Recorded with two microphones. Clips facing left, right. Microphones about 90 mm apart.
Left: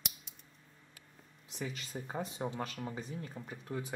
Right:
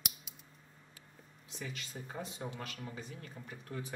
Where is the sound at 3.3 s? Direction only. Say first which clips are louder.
Left 2 dB; 20° left (ahead or behind).